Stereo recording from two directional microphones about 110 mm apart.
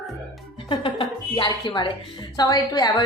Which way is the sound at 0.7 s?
50° left (ahead or behind).